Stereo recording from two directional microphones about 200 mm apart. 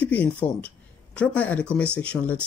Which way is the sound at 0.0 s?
10° left (ahead or behind).